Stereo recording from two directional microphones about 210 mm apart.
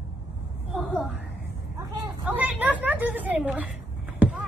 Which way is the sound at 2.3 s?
10° right (ahead or behind).